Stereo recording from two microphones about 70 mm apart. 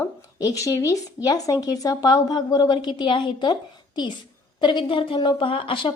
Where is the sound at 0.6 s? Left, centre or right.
Left.